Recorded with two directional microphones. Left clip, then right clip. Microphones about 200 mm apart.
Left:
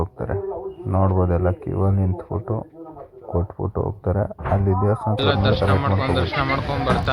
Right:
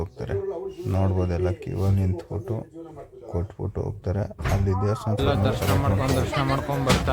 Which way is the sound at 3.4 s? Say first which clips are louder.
Left 7 dB; 5° right (ahead or behind).